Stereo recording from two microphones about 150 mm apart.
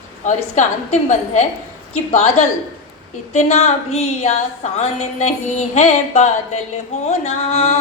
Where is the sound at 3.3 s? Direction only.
50° left (ahead or behind).